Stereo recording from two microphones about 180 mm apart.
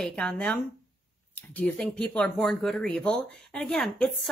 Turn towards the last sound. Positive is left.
turn(degrees=5)  # may be behind; listen again after turning